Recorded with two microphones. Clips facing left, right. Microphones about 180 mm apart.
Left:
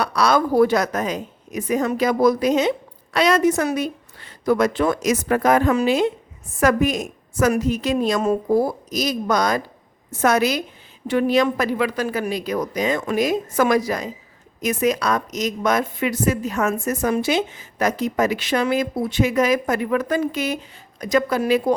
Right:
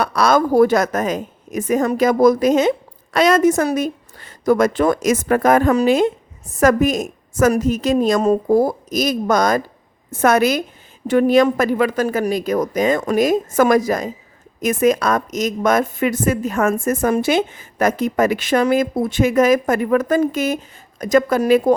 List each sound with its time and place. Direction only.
0.0 s a woman's voice: 50° right (ahead or behind)